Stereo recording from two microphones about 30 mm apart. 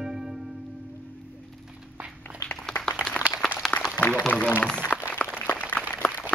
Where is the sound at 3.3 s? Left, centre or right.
Right.